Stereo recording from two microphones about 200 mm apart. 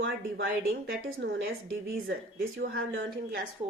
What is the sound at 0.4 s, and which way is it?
A woman's voice, 50° right (ahead or behind).